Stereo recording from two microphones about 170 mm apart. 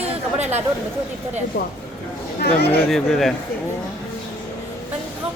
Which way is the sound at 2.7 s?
Centre (ahead or behind).